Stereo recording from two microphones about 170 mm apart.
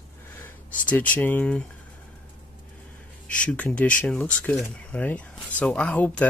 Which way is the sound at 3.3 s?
5° left (ahead or behind).